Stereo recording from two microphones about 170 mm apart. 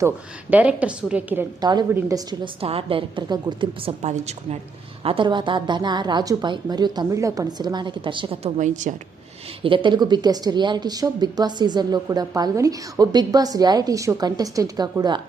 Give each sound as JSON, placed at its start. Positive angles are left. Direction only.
{"t": 0.5, "sound": "a woman's voice", "side_deg": -5}
{"t": 2.6, "sound": "a woman's voice", "side_deg": -35}
{"t": 5.0, "sound": "a woman's voice", "side_deg": -30}
{"t": 8.5, "sound": "a woman's voice", "side_deg": -45}
{"t": 9.6, "sound": "a woman's voice", "side_deg": -30}